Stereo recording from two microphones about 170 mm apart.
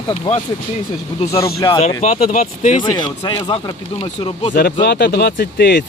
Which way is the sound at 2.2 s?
45° left (ahead or behind).